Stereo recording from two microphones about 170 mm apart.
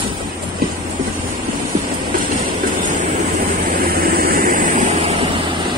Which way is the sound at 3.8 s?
60° right (ahead or behind).